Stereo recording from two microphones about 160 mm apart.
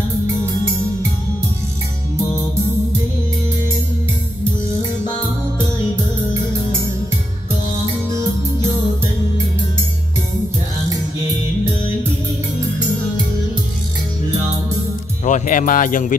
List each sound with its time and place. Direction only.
15.2 s speech: 50° left (ahead or behind)